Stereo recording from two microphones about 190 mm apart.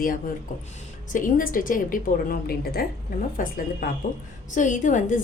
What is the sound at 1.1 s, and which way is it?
A woman's voice, 45° left (ahead or behind).